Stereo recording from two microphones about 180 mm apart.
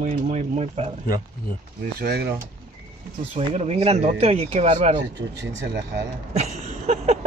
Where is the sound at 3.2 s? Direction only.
35° right (ahead or behind).